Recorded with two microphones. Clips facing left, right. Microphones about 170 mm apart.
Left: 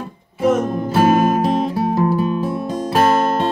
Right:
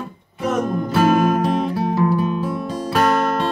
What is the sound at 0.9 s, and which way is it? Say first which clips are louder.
Music: left 2 dB; 25° left (ahead or behind).